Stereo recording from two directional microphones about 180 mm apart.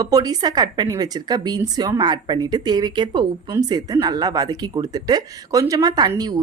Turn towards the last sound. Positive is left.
turn(degrees=-20)  # may be behind; listen again after turning